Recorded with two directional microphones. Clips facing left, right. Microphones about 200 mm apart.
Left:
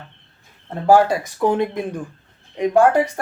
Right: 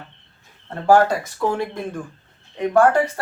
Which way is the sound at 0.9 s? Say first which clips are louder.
Left 1 dB; 15° left (ahead or behind).